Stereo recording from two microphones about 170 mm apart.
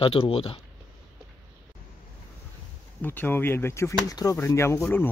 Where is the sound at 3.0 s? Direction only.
10° left (ahead or behind).